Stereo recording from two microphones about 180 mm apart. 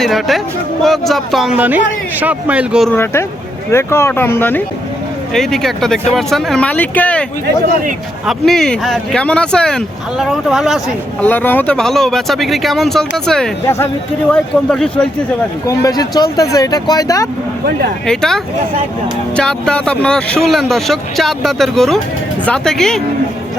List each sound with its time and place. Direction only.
0.0 s speech: centre (ahead or behind)
2.9 s speech: 15° left (ahead or behind)
8.3 s speech: centre (ahead or behind)
11.2 s speech: 10° left (ahead or behind)
15.6 s speech: 20° left (ahead or behind)
18.0 s speech: 5° left (ahead or behind)